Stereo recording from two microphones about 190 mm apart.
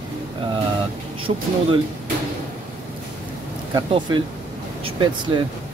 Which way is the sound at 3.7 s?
25° right (ahead or behind).